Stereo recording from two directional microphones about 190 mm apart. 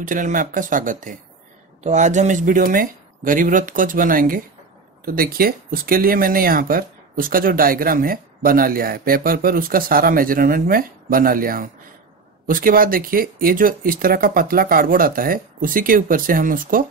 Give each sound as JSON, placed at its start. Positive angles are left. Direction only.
{"t": 0.0, "sound": "speech", "side_deg": -45}